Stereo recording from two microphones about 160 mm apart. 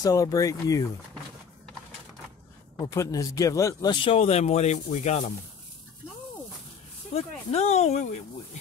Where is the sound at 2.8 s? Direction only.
20° left (ahead or behind); by 5.2 s 45° left (ahead or behind).